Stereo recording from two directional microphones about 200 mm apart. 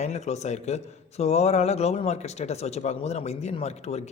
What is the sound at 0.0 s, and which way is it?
A man's voice, 35° left (ahead or behind).